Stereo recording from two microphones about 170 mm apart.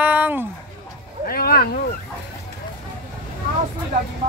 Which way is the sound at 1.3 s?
60° left (ahead or behind).